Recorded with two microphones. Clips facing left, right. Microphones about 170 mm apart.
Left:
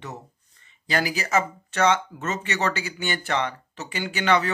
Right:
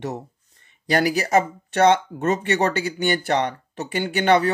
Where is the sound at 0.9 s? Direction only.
60° right (ahead or behind).